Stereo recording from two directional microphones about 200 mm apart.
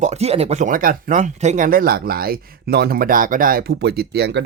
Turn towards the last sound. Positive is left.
turn(degrees=-55)  # may be behind; listen again after turning